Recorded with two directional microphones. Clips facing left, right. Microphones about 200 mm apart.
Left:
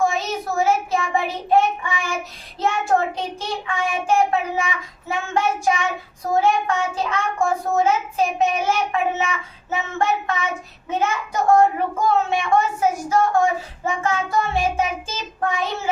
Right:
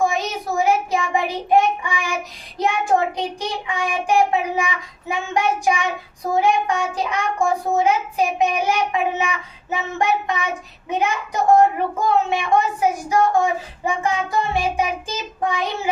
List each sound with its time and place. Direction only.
0.0 s child singing: 15° right (ahead or behind)
2.6 s a child's voice: 15° right (ahead or behind)